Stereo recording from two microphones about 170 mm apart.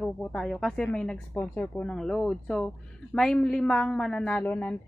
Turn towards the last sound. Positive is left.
turn(degrees=10)  # may be behind; listen again after turning